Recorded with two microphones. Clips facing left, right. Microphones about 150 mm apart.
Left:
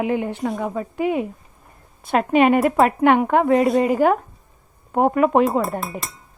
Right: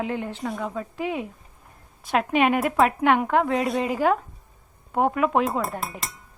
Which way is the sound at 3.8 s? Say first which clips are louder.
Left 7 dB; 50° left (ahead or behind).